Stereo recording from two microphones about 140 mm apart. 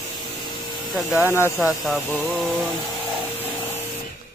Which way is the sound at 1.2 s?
20° left (ahead or behind).